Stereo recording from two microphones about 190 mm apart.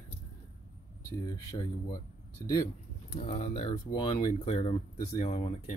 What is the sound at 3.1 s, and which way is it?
Speech, 35° left (ahead or behind).